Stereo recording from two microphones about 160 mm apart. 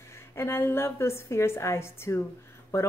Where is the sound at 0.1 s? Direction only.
15° left (ahead or behind).